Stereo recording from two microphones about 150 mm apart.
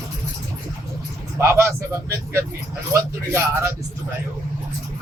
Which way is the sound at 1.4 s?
20° right (ahead or behind).